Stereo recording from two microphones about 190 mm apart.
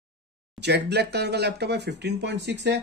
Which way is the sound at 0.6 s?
60° right (ahead or behind).